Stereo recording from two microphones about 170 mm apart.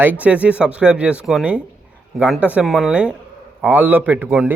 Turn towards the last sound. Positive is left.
turn(degrees=-10)  # may be behind; listen again after turning